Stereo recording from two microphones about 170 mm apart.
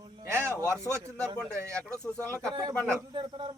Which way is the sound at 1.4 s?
5° left (ahead or behind).